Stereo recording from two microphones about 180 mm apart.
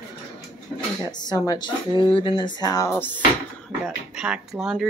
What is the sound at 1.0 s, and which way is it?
Speech, 20° left (ahead or behind).